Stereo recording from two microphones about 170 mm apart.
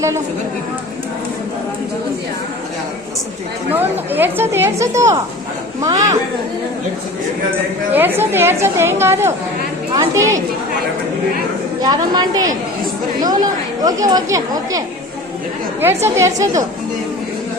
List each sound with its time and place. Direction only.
3.7 s a woman's voice: 10° right (ahead or behind)
7.9 s a woman's voice: 10° right (ahead or behind)
11.8 s a woman's voice: 25° right (ahead or behind)
16.0 s a woman's voice: 15° right (ahead or behind)